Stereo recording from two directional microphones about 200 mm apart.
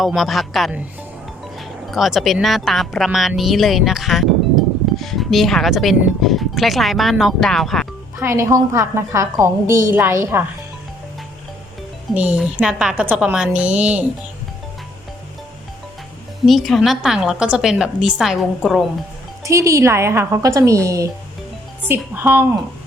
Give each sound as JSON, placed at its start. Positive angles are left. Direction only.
{"t": 0.0, "sound": "speech", "side_deg": 0}
{"t": 8.2, "sound": "speech", "side_deg": -15}
{"t": 12.1, "sound": "speech", "side_deg": -5}
{"t": 16.5, "sound": "speech", "side_deg": 0}
{"t": 19.5, "sound": "speech", "side_deg": -15}